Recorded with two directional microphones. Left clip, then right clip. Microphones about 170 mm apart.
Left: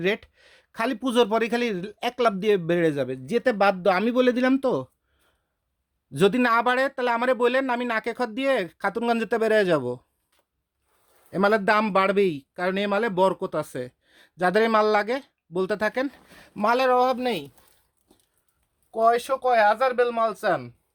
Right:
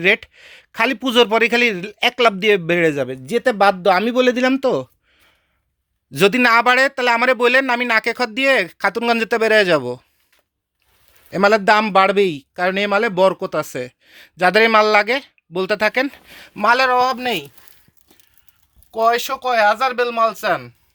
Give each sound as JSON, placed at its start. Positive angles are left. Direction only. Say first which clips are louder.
{"t": 0.0, "sound": "a man's voice", "louder": "right 10 dB", "side_deg": -15}
{"t": 6.1, "sound": "a man's voice", "louder": "right 7 dB", "side_deg": -10}
{"t": 11.3, "sound": "a man's voice", "louder": "right 7 dB", "side_deg": -20}
{"t": 18.9, "sound": "speech", "louder": "right 4 dB", "side_deg": -10}